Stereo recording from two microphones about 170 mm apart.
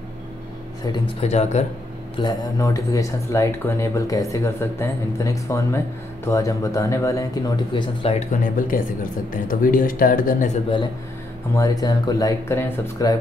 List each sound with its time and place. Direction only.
1.2 s a man's voice: 40° left (ahead or behind)
2.1 s speech: 25° left (ahead or behind)
8.3 s a man's voice: 50° left (ahead or behind)
11.5 s speech: 20° left (ahead or behind)